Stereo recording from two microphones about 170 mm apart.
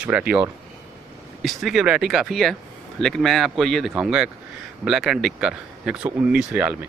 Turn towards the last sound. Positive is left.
turn(degrees=-10)  # may be behind; listen again after turning